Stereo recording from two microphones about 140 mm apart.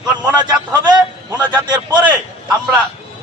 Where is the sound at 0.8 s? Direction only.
30° right (ahead or behind).